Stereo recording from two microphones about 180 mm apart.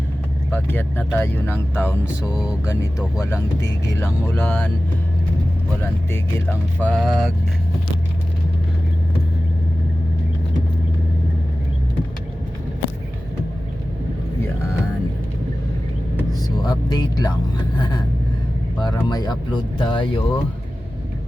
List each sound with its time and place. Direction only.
0.5 s speech: 10° left (ahead or behind)
4.0 s speech: 10° left (ahead or behind)
6.1 s speech: 10° left (ahead or behind)
16.6 s speech: 20° left (ahead or behind)